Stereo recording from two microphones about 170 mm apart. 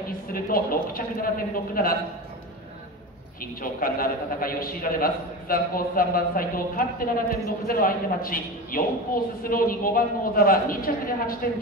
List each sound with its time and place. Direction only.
0.3 s a man's voice: 60° left (ahead or behind)
3.6 s a man's voice: 55° left (ahead or behind)